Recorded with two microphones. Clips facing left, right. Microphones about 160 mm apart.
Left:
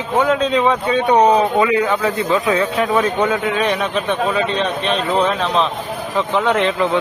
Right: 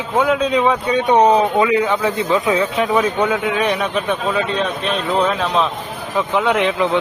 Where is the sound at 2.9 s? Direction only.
5° right (ahead or behind).